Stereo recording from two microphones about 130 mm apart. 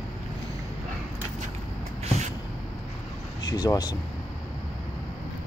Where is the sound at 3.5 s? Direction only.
30° left (ahead or behind).